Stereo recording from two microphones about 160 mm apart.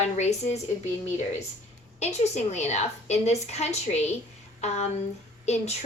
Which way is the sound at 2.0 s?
45° left (ahead or behind).